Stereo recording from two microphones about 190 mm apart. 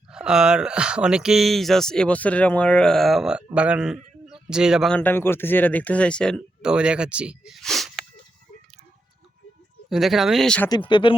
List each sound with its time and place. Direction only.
0.1 s speech: 5° right (ahead or behind)
9.9 s speech: centre (ahead or behind)
10.7 s speech: 25° left (ahead or behind)